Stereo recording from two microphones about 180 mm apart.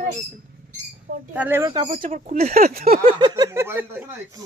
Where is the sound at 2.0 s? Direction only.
45° right (ahead or behind).